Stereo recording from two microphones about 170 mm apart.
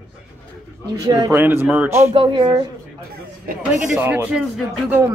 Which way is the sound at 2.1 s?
30° right (ahead or behind).